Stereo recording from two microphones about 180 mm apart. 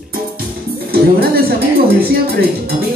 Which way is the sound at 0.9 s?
60° right (ahead or behind).